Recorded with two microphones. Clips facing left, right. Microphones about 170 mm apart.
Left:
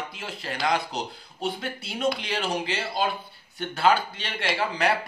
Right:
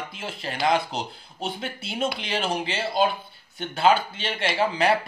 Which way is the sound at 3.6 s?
20° right (ahead or behind).